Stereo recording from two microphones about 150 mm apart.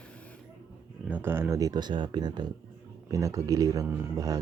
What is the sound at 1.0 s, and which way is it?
Speech, 10° right (ahead or behind).